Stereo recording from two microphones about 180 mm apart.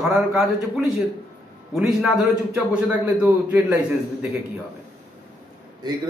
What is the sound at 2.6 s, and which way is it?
A man's voice, 10° right (ahead or behind).